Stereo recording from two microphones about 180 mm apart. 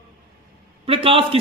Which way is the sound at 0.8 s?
30° right (ahead or behind).